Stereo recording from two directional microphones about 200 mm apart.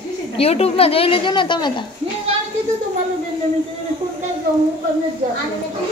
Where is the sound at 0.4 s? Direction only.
30° left (ahead or behind).